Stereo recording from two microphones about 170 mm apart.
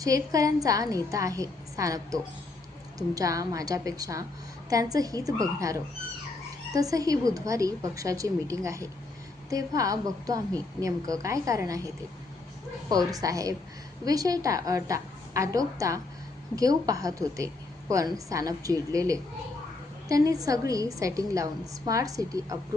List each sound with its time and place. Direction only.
0.0 s a woman's voice: 20° right (ahead or behind)
13.1 s a woman's voice: 20° right (ahead or behind)